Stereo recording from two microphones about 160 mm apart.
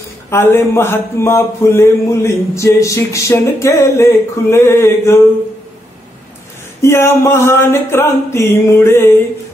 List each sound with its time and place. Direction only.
0.3 s speech: 15° left (ahead or behind)
6.8 s speech: 15° left (ahead or behind)